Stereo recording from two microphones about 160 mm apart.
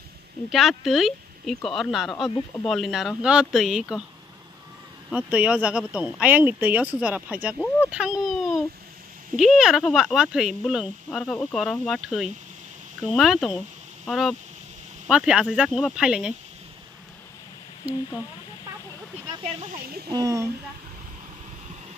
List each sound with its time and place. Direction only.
0.5 s speech: centre (ahead or behind)
5.1 s speech: 5° right (ahead or behind)
7.5 s speech: 5° left (ahead or behind)
7.9 s speech: 5° right (ahead or behind)
20.1 s speech: 20° right (ahead or behind)